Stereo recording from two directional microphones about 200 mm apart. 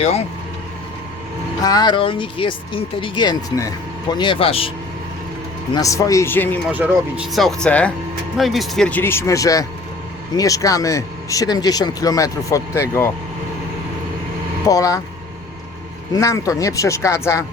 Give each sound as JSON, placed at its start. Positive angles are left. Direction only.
{"t": 0.0, "sound": "speech", "side_deg": 30}
{"t": 1.6, "sound": "speech", "side_deg": 20}
{"t": 5.7, "sound": "speech", "side_deg": 15}
{"t": 6.7, "sound": "speech", "side_deg": -5}
{"t": 14.7, "sound": "speech", "side_deg": 15}
{"t": 16.1, "sound": "speech", "side_deg": 15}